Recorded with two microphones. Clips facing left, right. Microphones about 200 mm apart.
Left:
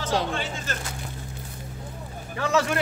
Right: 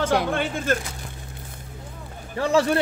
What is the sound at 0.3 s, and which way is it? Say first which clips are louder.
Speech: right 7 dB; 55° right (ahead or behind).